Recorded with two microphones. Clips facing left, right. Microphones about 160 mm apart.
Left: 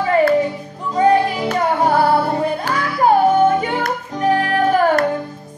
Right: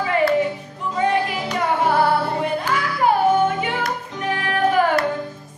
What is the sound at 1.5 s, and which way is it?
Music, 40° left (ahead or behind).